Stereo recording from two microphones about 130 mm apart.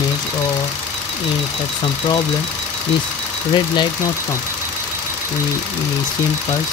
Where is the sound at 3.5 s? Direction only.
35° left (ahead or behind).